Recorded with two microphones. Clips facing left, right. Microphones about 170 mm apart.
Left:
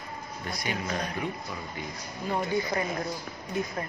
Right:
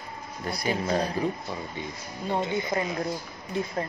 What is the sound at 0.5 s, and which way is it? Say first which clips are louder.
Speech: right 6 dB; 30° right (ahead or behind).